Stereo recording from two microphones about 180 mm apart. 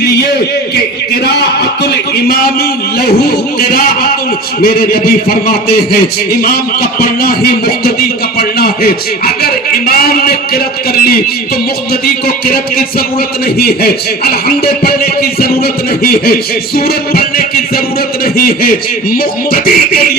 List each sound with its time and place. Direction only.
1.2 s a man's voice: 65° left (ahead or behind)
7.0 s a man's voice: 55° left (ahead or behind)
12.0 s a man's voice: 55° left (ahead or behind)